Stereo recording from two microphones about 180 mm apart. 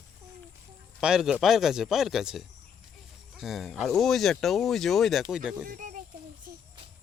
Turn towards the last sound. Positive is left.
turn(degrees=-50)  # may be behind; listen again after turning